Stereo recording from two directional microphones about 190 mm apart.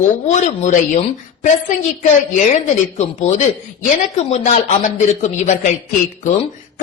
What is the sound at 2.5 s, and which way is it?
Speech, 35° left (ahead or behind).